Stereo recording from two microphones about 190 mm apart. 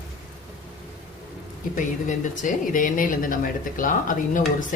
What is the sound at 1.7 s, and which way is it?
Speech, 45° left (ahead or behind).